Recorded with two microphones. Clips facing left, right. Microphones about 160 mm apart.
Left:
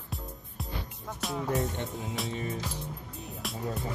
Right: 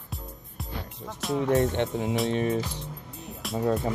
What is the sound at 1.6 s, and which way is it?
Speech, 80° right.